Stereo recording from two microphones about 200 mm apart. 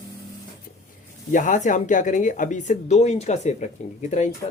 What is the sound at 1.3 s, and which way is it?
A man's voice, 40° left (ahead or behind).